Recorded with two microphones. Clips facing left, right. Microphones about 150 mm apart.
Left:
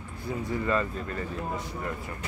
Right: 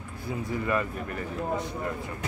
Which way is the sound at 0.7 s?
15° right (ahead or behind).